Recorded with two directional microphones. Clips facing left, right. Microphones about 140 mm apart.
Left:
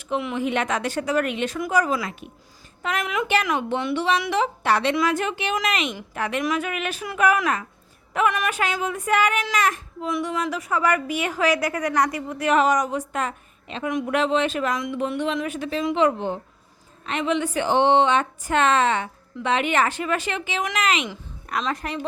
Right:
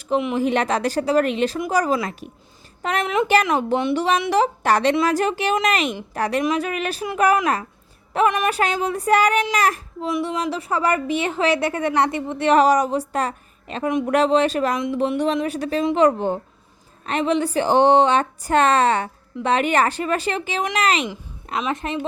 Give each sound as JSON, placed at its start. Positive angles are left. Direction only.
{"t": 0.3, "sound": "a woman's voice", "side_deg": -35}
{"t": 2.8, "sound": "a woman's voice", "side_deg": -30}
{"t": 21.7, "sound": "a woman's voice", "side_deg": -20}